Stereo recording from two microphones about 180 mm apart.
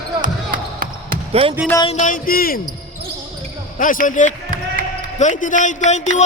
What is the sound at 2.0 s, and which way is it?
Speech, 50° left (ahead or behind).